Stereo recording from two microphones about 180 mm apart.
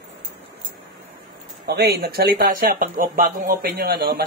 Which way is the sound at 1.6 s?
60° right (ahead or behind).